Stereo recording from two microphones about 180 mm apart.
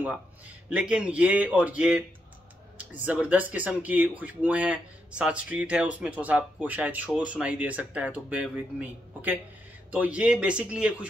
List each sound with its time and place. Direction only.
0.0 s speech: 5° right (ahead or behind)